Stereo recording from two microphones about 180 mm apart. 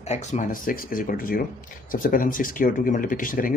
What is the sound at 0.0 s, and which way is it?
Speech, 40° left (ahead or behind).